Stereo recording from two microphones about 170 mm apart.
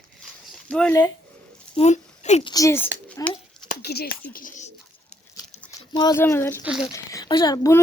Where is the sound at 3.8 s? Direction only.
70° left (ahead or behind); by 4.7 s 50° left (ahead or behind).